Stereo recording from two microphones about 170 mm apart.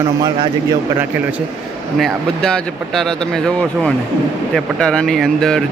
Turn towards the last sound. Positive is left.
turn(degrees=5)  # may be behind; listen again after turning